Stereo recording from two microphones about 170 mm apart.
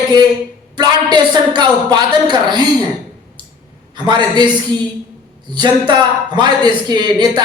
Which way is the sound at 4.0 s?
25° right (ahead or behind).